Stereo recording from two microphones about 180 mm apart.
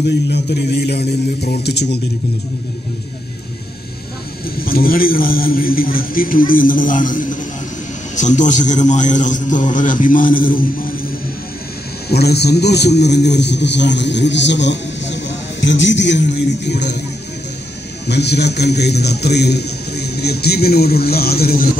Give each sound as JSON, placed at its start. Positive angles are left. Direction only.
{"t": 0.3, "sound": "a man's voice", "side_deg": 65}
{"t": 4.6, "sound": "a man's voice", "side_deg": 55}
{"t": 12.1, "sound": "a man's voice", "side_deg": 65}
{"t": 18.0, "sound": "a man's voice", "side_deg": 65}